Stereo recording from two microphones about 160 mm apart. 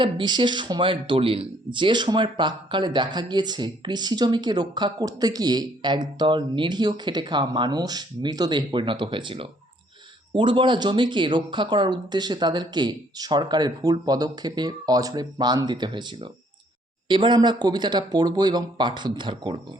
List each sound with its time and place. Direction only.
0.0 s speech: 30° right (ahead or behind)